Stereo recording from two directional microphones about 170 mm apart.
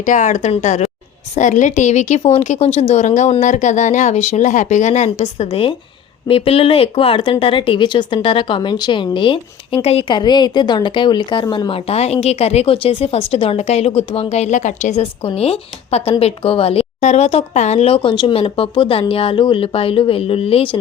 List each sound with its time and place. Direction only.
0.0 s a woman's voice: 45° left (ahead or behind)